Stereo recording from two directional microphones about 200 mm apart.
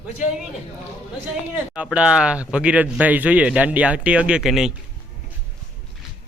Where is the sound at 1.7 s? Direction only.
5° right (ahead or behind).